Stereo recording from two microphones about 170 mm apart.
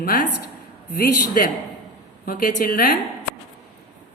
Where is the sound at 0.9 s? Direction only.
60° left (ahead or behind).